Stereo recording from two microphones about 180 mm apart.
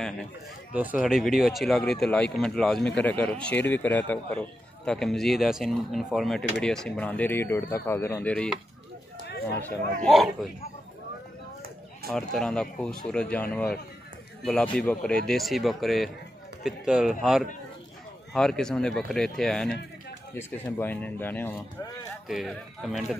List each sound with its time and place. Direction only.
1.0 s speech: centre (ahead or behind)
9.2 s chatter: 65° left (ahead or behind)
10.0 s speech: centre (ahead or behind)
12.1 s speech: 5° left (ahead or behind)
22.3 s speech: centre (ahead or behind)